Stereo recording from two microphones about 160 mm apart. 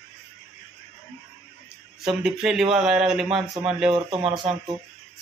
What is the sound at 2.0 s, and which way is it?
Speech, 5° right (ahead or behind).